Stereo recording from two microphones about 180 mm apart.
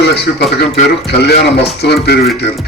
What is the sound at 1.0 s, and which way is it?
A man's voice, 65° left (ahead or behind).